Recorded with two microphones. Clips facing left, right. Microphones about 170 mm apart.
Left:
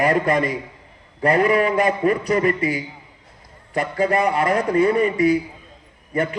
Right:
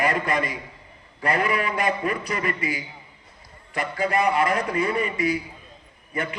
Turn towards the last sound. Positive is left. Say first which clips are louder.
# left 7 dB
turn(degrees=35)  # may be behind; listen again after turning